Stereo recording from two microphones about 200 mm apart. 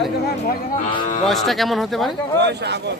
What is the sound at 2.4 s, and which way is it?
Speech, 60° right (ahead or behind).